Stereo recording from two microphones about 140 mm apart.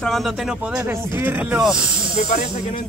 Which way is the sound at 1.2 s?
10° right (ahead or behind).